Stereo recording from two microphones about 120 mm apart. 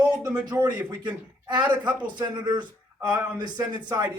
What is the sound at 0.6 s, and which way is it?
A man's voice, 35° right (ahead or behind).